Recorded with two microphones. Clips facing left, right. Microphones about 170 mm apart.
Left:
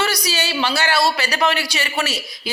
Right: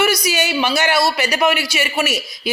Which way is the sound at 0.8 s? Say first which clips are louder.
Right 1 dB; 15° right (ahead or behind).